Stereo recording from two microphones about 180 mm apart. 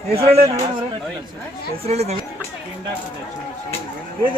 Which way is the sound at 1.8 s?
35° right (ahead or behind).